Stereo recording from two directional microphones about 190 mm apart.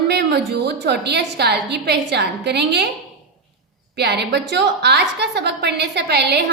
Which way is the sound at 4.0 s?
60° right (ahead or behind).